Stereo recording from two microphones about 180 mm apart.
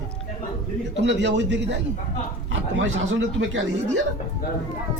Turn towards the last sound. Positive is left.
turn(degrees=-90)